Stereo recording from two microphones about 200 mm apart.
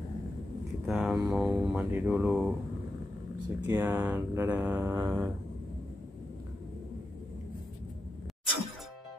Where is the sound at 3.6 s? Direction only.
10° right (ahead or behind).